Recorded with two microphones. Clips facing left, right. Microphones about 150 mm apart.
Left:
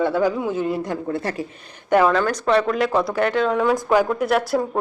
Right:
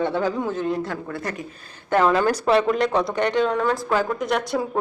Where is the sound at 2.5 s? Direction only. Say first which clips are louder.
Left 2 dB; centre (ahead or behind).